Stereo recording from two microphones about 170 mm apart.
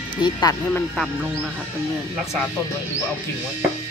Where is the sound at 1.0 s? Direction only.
5° right (ahead or behind).